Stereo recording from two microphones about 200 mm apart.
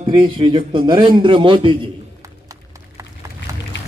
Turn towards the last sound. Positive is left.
turn(degrees=-15)  # may be behind; listen again after turning